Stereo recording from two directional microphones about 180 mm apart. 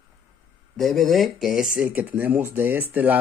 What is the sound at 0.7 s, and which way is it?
Speech, centre (ahead or behind).